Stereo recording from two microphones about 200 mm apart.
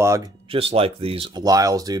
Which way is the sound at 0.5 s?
30° right (ahead or behind).